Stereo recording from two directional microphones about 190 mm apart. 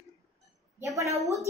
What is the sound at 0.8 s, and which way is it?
Speech, 15° right (ahead or behind).